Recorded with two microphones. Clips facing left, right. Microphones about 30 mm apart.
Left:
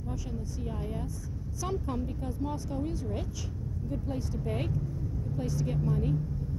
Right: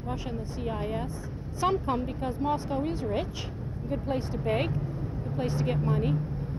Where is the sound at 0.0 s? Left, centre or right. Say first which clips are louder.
Right 4 dB; right.